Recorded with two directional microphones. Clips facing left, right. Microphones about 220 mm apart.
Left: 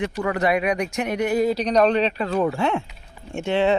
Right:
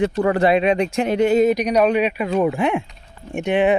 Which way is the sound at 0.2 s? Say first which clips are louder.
Right 4 dB; 30° right (ahead or behind).